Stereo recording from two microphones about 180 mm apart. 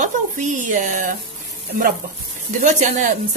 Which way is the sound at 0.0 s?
45° right (ahead or behind).